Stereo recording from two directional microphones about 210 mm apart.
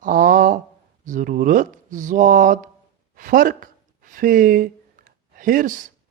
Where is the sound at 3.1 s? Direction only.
40° right (ahead or behind).